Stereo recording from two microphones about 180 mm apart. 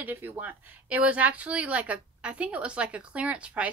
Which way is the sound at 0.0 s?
10° right (ahead or behind).